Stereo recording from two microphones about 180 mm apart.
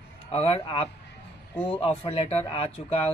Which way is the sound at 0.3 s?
35° left (ahead or behind).